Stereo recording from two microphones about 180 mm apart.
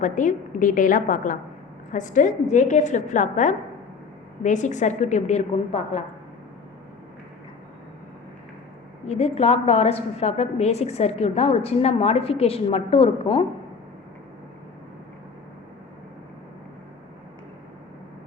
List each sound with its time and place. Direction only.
0.0 s a woman's voice: 45° left (ahead or behind)
9.0 s a woman's voice: 35° left (ahead or behind)